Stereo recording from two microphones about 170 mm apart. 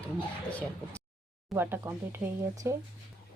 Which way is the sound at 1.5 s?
15° right (ahead or behind).